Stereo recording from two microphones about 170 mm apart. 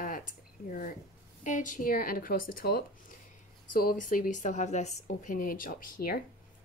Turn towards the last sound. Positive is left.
turn(degrees=60)  # may be behind; listen again after turning